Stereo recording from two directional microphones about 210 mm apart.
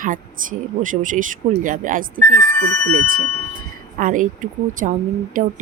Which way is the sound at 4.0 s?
40° right (ahead or behind).